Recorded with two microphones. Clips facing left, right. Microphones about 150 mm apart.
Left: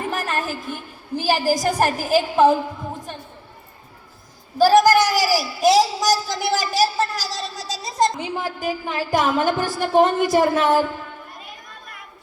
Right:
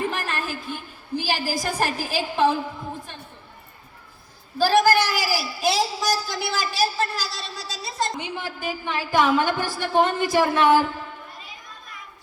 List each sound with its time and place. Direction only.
0.1 s a sound: 45° left (ahead or behind)
4.5 s a man's voice: 45° left (ahead or behind)
11.3 s children playing: 55° left (ahead or behind)